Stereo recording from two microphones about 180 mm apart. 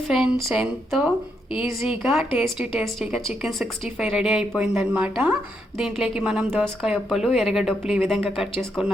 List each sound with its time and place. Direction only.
0.1 s a woman's voice: 5° right (ahead or behind)